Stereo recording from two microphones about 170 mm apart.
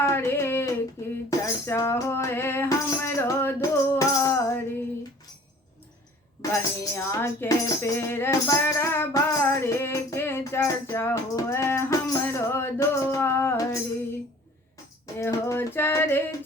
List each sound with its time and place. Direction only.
0.0 s a sound: 15° left (ahead or behind)
1.0 s music: 15° left (ahead or behind)
6.5 s speech: 15° left (ahead or behind)
15.0 s speech: 20° left (ahead or behind)